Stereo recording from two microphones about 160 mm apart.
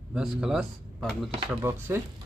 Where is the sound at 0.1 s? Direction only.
5° right (ahead or behind).